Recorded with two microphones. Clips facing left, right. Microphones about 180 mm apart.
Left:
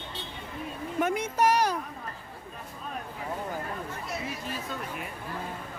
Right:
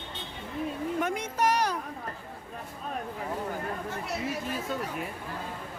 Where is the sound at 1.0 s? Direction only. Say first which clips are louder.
Left 5 dB; 5° left (ahead or behind).